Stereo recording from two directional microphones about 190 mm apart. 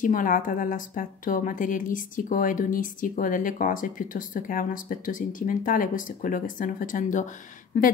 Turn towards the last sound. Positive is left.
turn(degrees=45)  # may be behind; listen again after turning